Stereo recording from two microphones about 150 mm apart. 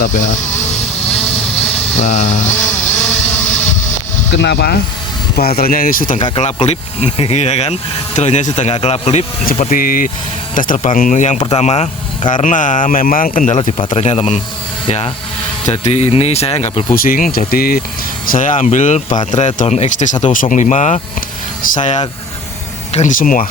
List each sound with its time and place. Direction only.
0.0 s vehicle: 55° left (ahead or behind)
1.5 s a sound: 40° left (ahead or behind)
2.0 s speech: 50° left (ahead or behind)
2.6 s vehicle: 10° left (ahead or behind)
5.4 s speech: 90° left; by 6.1 s 70° left (ahead or behind)
6.1 s speech: 35° left (ahead or behind)
6.4 s speech: 45° left (ahead or behind)
9.5 s speech: 60° left (ahead or behind)
13.7 s speech: 35° left (ahead or behind)
14.1 s speech: 50° left (ahead or behind)
14.8 s speech: 40° left (ahead or behind)
15.6 s speech: 50° left (ahead or behind)
16.9 s speech: 70° left (ahead or behind)
18.3 s speech: 60° left (ahead or behind)